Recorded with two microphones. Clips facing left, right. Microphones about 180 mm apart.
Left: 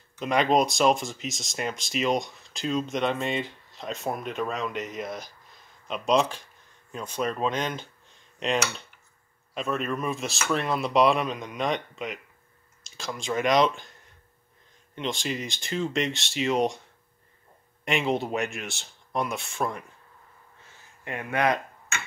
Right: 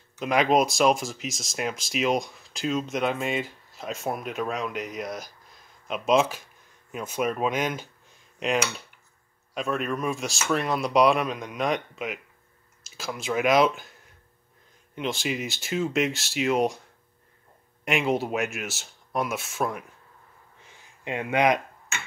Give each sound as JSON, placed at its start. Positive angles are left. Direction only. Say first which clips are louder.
{"t": 0.2, "sound": "speech", "louder": "right 1 dB", "side_deg": 0}
{"t": 15.0, "sound": "speech", "louder": "right 2 dB", "side_deg": -5}
{"t": 17.8, "sound": "speech", "louder": "right 1 dB", "side_deg": 0}
{"t": 20.7, "sound": "a sound", "louder": "right 4 dB", "side_deg": -20}